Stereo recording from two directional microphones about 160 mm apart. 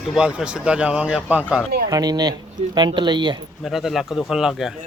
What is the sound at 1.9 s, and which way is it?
Speech, 25° right (ahead or behind).